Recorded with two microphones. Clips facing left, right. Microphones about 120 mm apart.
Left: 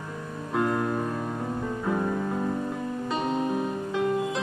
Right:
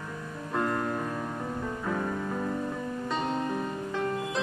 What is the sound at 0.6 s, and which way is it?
Music, 10° left (ahead or behind).